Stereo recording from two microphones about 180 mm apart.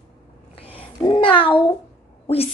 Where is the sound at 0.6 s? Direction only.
30° left (ahead or behind).